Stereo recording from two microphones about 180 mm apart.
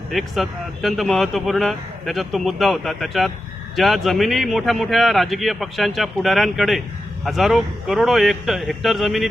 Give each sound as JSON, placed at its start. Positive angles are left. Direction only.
{"t": 0.1, "sound": "speech", "side_deg": 0}